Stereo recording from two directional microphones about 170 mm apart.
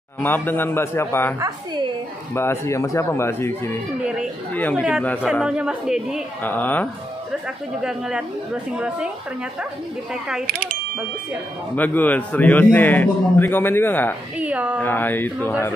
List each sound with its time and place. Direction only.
0.2 s a man's voice: 10° left (ahead or behind)
2.3 s a man's voice: 15° left (ahead or behind)
5.2 s a woman's voice: 5° right (ahead or behind)
6.4 s a man's voice: 10° left (ahead or behind)
7.8 s a woman's voice: 5° right (ahead or behind)
10.4 s mechanisms: 60° right (ahead or behind)
11.7 s a man's voice: 10° left (ahead or behind)
14.4 s speech: 10° right (ahead or behind)
14.8 s a man's voice: 10° left (ahead or behind)